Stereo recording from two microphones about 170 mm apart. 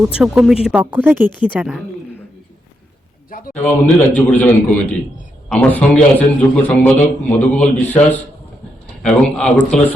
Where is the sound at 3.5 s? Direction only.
10° left (ahead or behind).